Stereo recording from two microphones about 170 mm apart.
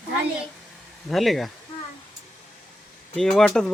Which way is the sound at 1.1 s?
Centre (ahead or behind).